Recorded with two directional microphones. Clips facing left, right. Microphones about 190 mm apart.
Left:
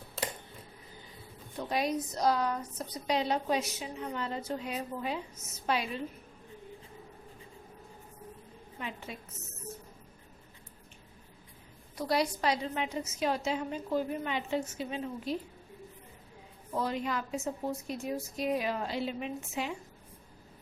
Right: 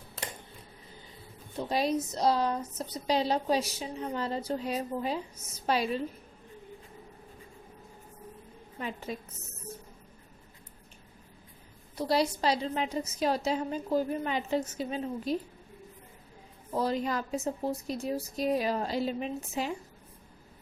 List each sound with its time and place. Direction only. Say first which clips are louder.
1.5 s a woman's voice: right 3 dB; 30° right (ahead or behind)
9.1 s a woman's voice: right 6 dB; 40° right (ahead or behind)
11.9 s a woman's voice: right 2 dB; 30° right (ahead or behind)
16.7 s a woman's voice: right 3 dB; 35° right (ahead or behind)